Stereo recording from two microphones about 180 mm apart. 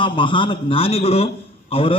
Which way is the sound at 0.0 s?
30° left (ahead or behind).